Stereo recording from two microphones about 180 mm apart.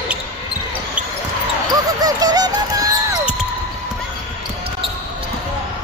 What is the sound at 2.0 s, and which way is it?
Music, 20° right (ahead or behind).